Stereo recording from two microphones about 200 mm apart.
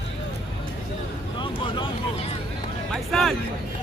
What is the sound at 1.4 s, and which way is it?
Vehicle, 25° left (ahead or behind).